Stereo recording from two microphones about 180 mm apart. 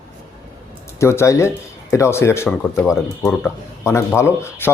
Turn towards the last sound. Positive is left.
turn(degrees=15)  # may be behind; listen again after turning